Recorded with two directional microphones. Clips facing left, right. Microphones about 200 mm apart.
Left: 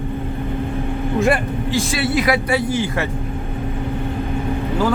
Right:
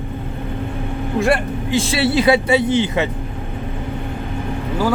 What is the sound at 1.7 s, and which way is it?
Speech, 25° right (ahead or behind).